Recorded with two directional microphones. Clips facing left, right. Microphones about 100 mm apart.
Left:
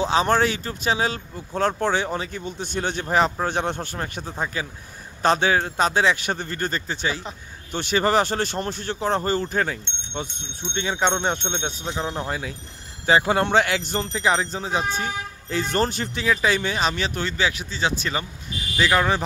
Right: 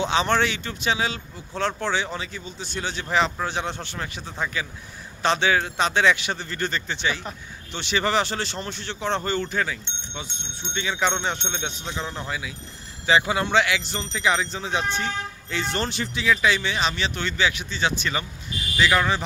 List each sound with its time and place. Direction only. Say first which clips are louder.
0.0 s speech: left 2 dB; 35° left (ahead or behind)